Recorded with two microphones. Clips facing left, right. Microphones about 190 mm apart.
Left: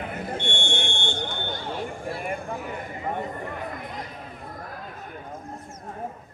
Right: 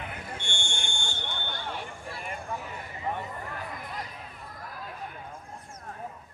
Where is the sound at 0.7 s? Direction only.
65° left (ahead or behind).